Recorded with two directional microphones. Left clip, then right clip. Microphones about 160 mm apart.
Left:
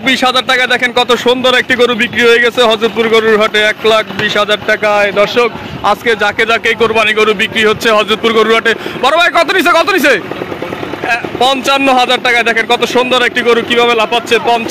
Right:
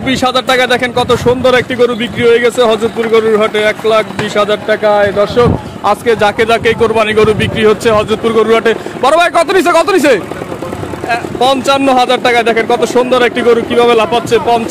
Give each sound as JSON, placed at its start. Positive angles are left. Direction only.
{"t": 0.0, "sound": "speech", "side_deg": 0}
{"t": 6.0, "sound": "speech", "side_deg": -15}